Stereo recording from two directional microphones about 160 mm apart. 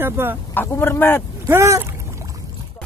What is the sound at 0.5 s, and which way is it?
Speech, 15° left (ahead or behind).